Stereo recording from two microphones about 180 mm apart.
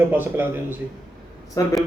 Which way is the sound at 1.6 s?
20° left (ahead or behind).